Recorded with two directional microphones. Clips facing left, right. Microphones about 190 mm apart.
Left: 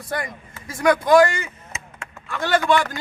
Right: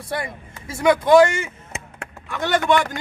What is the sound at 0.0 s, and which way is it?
Speech, 25° right (ahead or behind).